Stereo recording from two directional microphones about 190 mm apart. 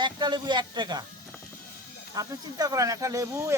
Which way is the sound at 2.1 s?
20° right (ahead or behind).